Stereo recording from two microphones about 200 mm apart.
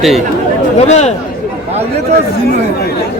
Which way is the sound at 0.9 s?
35° left (ahead or behind).